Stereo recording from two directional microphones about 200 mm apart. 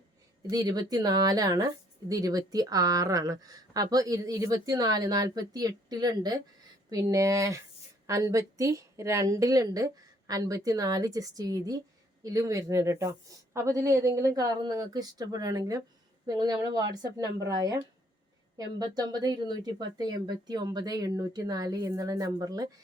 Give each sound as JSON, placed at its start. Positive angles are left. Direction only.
{"t": 0.5, "sound": "a woman's voice", "side_deg": -20}